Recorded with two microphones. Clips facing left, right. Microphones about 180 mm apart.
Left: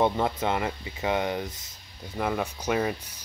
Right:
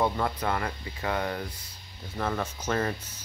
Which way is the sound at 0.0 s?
20° left (ahead or behind).